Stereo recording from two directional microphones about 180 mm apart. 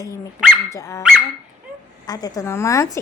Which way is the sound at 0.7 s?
15° left (ahead or behind).